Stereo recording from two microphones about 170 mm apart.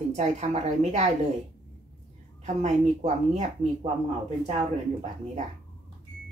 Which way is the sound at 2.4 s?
40° right (ahead or behind).